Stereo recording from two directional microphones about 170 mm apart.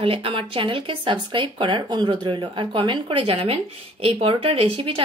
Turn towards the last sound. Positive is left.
turn(degrees=-35)  # may be behind; listen again after turning